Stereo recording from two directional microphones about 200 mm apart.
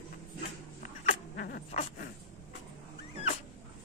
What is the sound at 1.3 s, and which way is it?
Dog, 50° left (ahead or behind).